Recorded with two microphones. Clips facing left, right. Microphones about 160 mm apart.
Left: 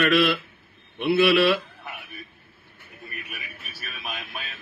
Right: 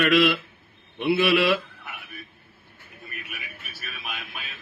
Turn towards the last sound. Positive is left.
turn(degrees=40)  # may be behind; listen again after turning